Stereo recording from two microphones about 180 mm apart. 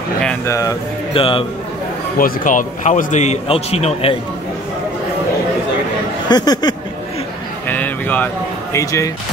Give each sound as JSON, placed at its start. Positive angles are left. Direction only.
{"t": 0.5, "sound": "speech", "side_deg": 15}
{"t": 1.1, "sound": "a man's voice", "side_deg": 30}
{"t": 2.1, "sound": "speech", "side_deg": 50}
{"t": 6.2, "sound": "speech", "side_deg": 20}
{"t": 7.6, "sound": "a sound", "side_deg": 10}
{"t": 8.7, "sound": "speech", "side_deg": 15}